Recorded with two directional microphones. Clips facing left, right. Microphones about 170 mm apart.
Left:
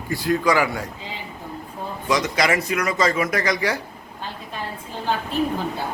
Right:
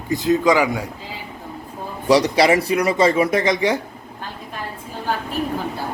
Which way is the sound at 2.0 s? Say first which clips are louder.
Right 7 dB; 35° right (ahead or behind).